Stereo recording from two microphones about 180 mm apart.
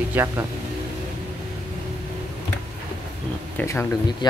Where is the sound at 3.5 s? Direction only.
10° left (ahead or behind).